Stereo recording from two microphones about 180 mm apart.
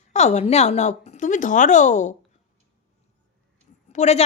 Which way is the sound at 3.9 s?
40° left (ahead or behind).